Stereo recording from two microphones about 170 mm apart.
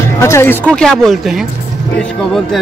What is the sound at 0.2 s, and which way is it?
Speech, 15° left (ahead or behind).